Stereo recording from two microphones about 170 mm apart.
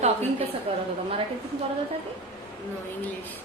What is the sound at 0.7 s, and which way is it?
Speech, 35° right (ahead or behind).